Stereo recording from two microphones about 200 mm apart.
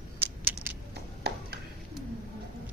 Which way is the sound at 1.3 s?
55° right (ahead or behind).